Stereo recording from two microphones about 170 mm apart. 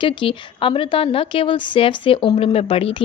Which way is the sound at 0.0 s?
30° left (ahead or behind).